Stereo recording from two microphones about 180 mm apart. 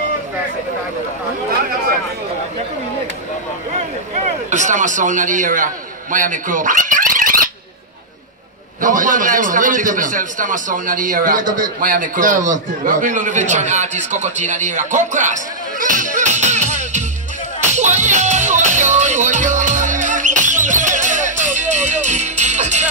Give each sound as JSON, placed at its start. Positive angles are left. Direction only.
{"t": 4.5, "sound": "a man's voice", "side_deg": -45}
{"t": 6.1, "sound": "a sound", "side_deg": -45}
{"t": 8.8, "sound": "a man's voice", "side_deg": -45}
{"t": 17.7, "sound": "music", "side_deg": -40}